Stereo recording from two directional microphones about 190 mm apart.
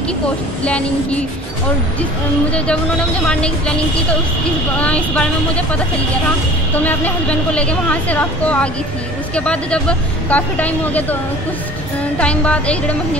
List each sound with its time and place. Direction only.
0.7 s speech: 5° left (ahead or behind)
2.5 s speech: 5° left (ahead or behind)
6.8 s speech: 10° left (ahead or behind)
12.2 s speech: 5° left (ahead or behind)